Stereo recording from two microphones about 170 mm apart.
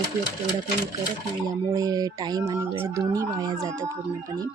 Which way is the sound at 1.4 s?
20° right (ahead or behind).